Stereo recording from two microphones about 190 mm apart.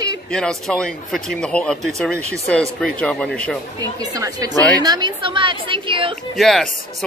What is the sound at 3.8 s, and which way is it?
Speech, 20° right (ahead or behind).